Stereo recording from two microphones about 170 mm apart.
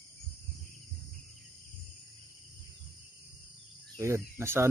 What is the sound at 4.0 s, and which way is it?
Speech, 15° right (ahead or behind).